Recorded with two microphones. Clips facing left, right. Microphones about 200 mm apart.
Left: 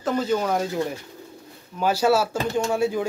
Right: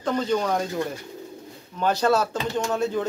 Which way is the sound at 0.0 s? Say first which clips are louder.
Left 1 dB; 5° left (ahead or behind).